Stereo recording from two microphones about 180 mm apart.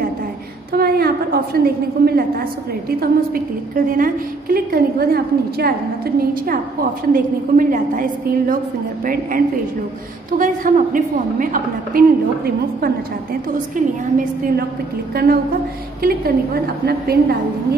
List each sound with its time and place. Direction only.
0.7 s a woman's voice: 55° right (ahead or behind)
13.5 s a woman's voice: 45° right (ahead or behind)
16.0 s a woman's voice: 55° right (ahead or behind)